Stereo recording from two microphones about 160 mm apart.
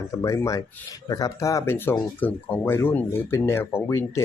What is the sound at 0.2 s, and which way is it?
Speech, 20° left (ahead or behind).